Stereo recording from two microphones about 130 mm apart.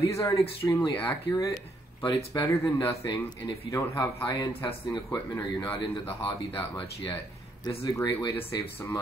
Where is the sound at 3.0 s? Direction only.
35° left (ahead or behind).